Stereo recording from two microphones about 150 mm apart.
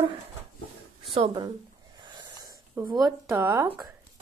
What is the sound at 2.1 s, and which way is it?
Snort, 30° right (ahead or behind).